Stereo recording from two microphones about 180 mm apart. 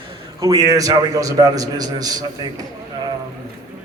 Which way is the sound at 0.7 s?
20° right (ahead or behind).